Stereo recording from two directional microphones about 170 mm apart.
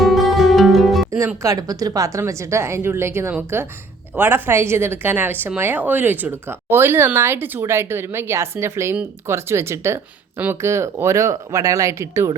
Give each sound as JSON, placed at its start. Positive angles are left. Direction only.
{"t": 0.0, "sound": "music", "side_deg": 0}
{"t": 1.1, "sound": "a woman's voice", "side_deg": -15}